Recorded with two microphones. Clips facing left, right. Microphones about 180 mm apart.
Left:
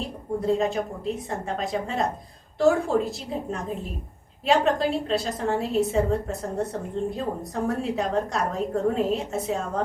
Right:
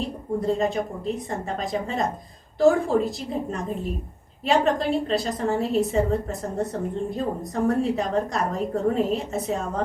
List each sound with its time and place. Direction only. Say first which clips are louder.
0.0 s a woman's voice: right 2 dB; centre (ahead or behind)
4.4 s a woman's voice: even; centre (ahead or behind)